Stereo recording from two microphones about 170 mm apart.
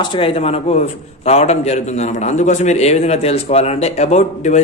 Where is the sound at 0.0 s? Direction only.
35° left (ahead or behind).